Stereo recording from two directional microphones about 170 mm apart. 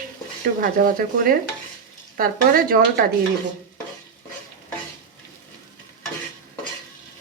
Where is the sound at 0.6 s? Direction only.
55° right (ahead or behind).